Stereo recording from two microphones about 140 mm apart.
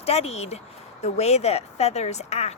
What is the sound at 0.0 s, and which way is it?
A woman's voice, 45° left (ahead or behind).